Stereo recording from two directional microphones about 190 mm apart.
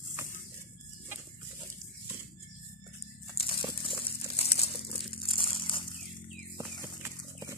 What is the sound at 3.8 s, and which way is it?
Crumpling, 30° left (ahead or behind).